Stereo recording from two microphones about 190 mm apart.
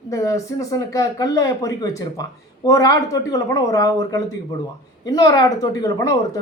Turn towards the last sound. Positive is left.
turn(degrees=20)  # may be behind; listen again after turning